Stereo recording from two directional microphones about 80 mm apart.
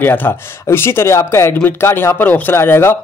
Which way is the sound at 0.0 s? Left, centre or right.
Left.